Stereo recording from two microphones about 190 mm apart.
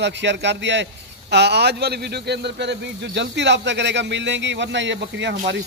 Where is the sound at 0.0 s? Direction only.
65° right (ahead or behind).